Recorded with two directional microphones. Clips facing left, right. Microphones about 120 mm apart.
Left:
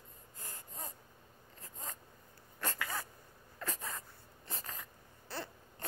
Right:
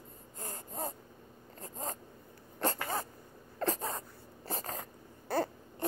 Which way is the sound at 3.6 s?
35° right (ahead or behind).